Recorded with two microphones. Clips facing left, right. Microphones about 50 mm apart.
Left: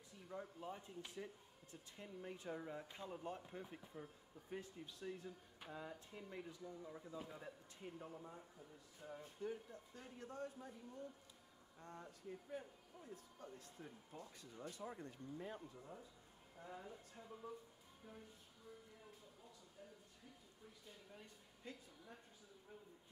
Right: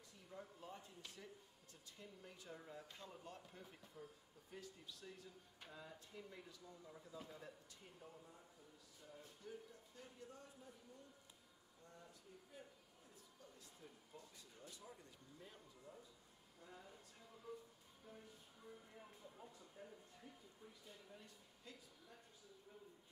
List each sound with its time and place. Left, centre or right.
0.3 s speech: left
7.2 s a man's voice: centre
7.8 s speech: left
10.1 s speech: left
11.8 s a woman's voice: left
19.8 s a sound: right
20.8 s a sound: centre
21.7 s speech: left